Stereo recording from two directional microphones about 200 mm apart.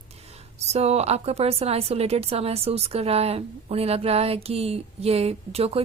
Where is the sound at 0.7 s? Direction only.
30° right (ahead or behind).